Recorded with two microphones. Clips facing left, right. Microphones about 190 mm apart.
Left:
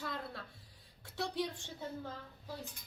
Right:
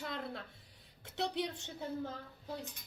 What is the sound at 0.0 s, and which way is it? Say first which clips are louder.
Music: right 1 dB; 20° right (ahead or behind).